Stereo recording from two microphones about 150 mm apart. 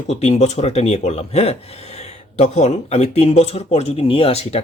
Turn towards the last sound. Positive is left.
turn(degrees=40)  # may be behind; listen again after turning